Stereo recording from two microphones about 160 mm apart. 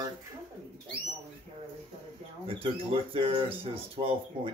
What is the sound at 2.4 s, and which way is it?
Speech, 35° right (ahead or behind).